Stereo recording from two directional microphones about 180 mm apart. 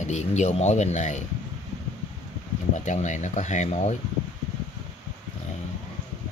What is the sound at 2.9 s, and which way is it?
Speech, 40° left (ahead or behind).